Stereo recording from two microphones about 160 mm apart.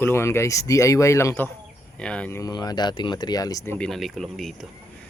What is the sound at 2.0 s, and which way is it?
Speech, 5° left (ahead or behind).